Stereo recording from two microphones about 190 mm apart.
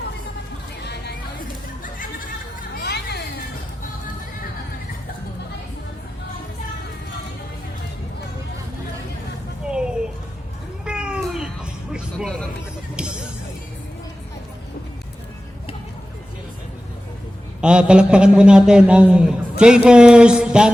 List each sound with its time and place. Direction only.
0.9 s music: 55° left (ahead or behind)
2.7 s hubbub: 60° left (ahead or behind)
9.6 s music: 5° right (ahead or behind)
17.6 s a man's voice: 5° right (ahead or behind)